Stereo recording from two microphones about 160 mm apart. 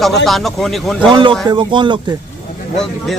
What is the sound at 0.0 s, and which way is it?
A man's voice, centre (ahead or behind).